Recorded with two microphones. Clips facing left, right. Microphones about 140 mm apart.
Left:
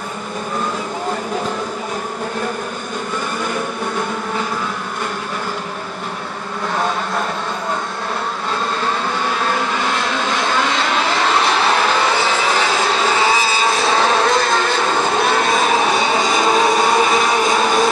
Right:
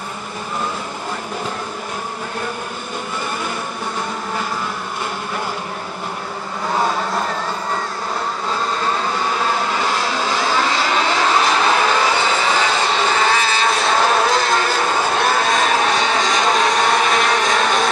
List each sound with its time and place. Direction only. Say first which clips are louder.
10.5 s vehicle: even; 5° right (ahead or behind)
13.2 s vehicle: left 1 dB; 5° left (ahead or behind)